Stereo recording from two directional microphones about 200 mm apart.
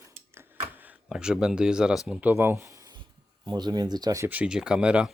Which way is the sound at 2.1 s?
10° right (ahead or behind).